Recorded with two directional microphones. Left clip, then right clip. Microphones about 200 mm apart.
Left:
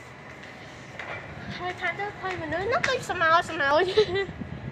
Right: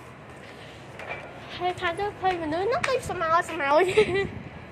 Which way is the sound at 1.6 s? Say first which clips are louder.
Right 3 dB; 25° right (ahead or behind).